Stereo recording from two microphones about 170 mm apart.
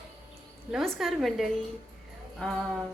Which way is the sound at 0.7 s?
Centre (ahead or behind).